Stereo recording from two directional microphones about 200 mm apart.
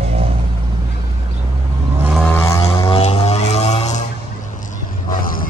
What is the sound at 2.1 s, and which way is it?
Vehicle, 5° left (ahead or behind).